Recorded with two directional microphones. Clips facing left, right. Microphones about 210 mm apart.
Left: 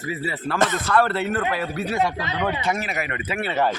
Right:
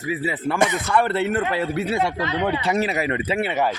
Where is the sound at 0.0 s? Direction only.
15° right (ahead or behind).